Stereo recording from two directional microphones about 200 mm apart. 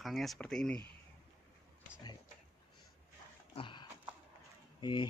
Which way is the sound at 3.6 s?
25° left (ahead or behind).